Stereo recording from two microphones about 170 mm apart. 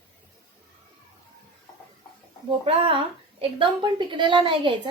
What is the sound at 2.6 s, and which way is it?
Speech, 30° right (ahead or behind).